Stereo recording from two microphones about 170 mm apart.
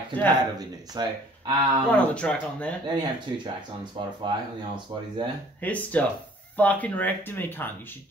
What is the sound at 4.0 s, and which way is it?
Speech, 30° right (ahead or behind).